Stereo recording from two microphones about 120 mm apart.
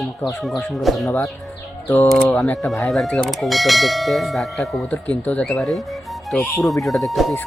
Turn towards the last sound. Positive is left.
turn(degrees=0)  # may be behind; listen again after turning